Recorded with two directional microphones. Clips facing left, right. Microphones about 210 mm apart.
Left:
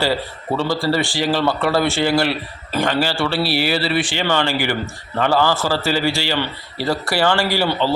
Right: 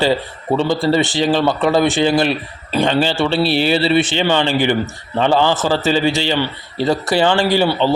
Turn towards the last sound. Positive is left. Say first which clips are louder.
# right 4 dB
turn(degrees=-20)  # may be behind; listen again after turning